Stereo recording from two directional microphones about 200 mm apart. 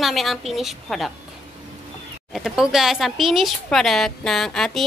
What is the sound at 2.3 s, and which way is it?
A woman's voice, centre (ahead or behind).